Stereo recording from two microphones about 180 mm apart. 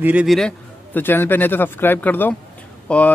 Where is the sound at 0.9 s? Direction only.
10° left (ahead or behind).